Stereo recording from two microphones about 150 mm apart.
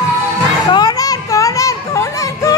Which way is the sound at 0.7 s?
30° left (ahead or behind).